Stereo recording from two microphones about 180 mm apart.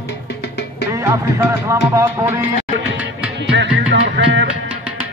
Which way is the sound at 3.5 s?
85° right.